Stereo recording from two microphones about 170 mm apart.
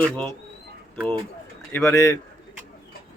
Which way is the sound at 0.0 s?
5° left (ahead or behind).